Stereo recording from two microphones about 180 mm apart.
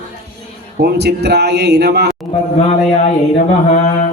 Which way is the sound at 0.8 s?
65° right (ahead or behind).